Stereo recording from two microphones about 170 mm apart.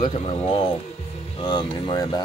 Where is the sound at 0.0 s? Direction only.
35° left (ahead or behind).